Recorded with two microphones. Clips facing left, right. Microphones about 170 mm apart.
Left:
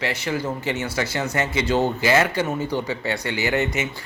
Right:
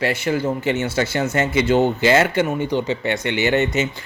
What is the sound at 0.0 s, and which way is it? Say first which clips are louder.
Speech: right 5 dB; 30° right (ahead or behind).